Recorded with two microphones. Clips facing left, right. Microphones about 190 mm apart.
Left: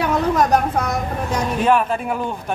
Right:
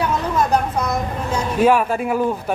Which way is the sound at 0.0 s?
65° left (ahead or behind).